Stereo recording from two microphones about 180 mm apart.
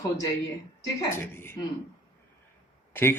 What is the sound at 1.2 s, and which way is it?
Speech, 15° left (ahead or behind).